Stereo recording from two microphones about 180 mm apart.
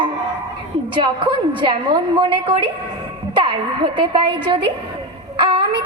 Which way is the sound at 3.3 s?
25° right (ahead or behind).